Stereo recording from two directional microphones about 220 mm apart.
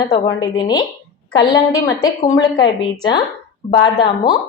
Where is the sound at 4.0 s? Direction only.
20° left (ahead or behind).